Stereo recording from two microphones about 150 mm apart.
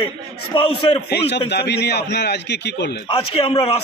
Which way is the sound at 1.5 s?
90° left.